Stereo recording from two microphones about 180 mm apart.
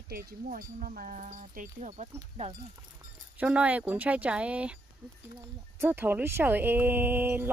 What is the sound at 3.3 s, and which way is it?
Speech, 5° right (ahead or behind).